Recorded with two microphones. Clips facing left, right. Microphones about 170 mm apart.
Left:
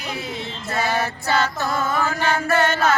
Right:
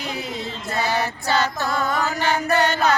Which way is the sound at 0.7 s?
20° right (ahead or behind).